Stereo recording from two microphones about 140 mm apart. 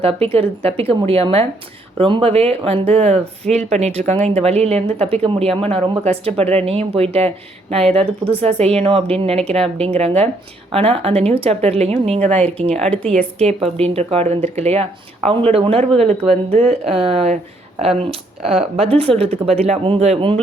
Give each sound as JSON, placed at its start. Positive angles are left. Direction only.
{"t": 0.0, "sound": "speech", "side_deg": -45}
{"t": 13.4, "sound": "speech", "side_deg": -50}